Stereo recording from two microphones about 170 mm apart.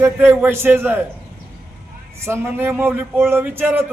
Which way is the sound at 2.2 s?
15° right (ahead or behind).